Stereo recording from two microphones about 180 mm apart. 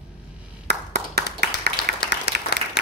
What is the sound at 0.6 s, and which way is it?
Clapping, 65° right (ahead or behind).